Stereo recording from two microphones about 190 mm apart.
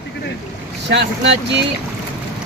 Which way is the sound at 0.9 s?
65° right (ahead or behind).